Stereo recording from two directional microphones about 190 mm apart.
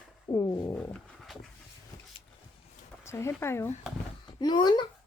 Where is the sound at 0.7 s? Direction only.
Centre (ahead or behind).